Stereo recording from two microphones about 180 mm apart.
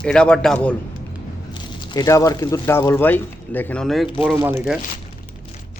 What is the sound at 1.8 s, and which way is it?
Speech, 25° left (ahead or behind).